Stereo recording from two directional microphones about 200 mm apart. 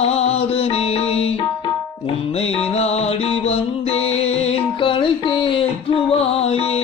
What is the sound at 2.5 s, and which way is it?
Music, 30° left (ahead or behind).